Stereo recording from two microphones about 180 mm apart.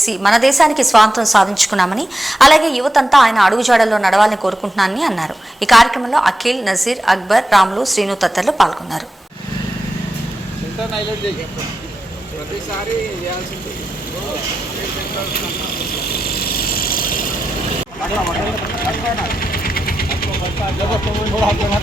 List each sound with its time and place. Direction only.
0.0 s a woman's voice: centre (ahead or behind)
16.0 s vehicle: 60° left (ahead or behind)
19.3 s vehicle: 55° left (ahead or behind)